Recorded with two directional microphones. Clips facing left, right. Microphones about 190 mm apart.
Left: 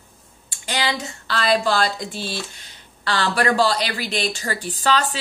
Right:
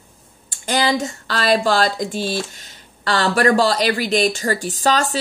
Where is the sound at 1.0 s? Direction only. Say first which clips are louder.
Right 3 dB; 45° right (ahead or behind).